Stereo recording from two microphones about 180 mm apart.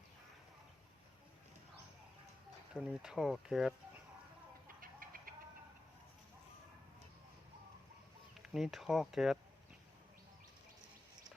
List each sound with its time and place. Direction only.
2.7 s speech: 5° right (ahead or behind)
4.8 s chicken: 50° right (ahead or behind)
8.4 s speech: centre (ahead or behind)